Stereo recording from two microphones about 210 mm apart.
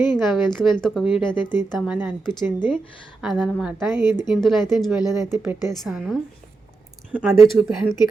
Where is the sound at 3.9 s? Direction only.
20° left (ahead or behind).